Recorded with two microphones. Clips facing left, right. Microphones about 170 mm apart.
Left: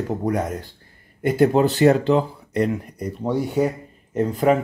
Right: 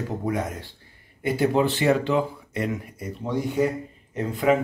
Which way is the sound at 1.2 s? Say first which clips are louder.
Left 5 dB; 50° left (ahead or behind).